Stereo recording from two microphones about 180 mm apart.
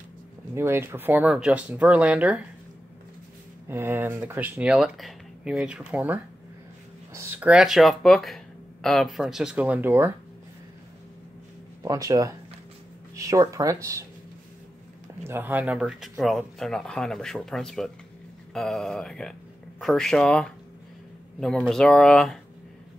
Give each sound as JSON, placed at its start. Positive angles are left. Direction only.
{"t": 0.6, "sound": "speech", "side_deg": -15}
{"t": 3.6, "sound": "speech", "side_deg": -15}
{"t": 11.8, "sound": "speech", "side_deg": -20}
{"t": 15.2, "sound": "speech", "side_deg": -10}